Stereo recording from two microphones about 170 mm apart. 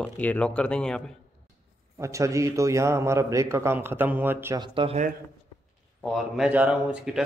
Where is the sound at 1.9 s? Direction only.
15° right (ahead or behind).